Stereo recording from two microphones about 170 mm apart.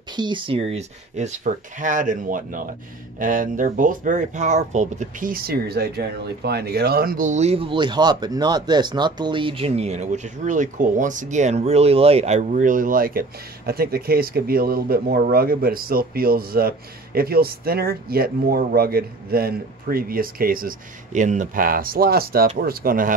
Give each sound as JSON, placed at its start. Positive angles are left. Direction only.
{"t": 0.1, "sound": "a man's voice", "side_deg": -25}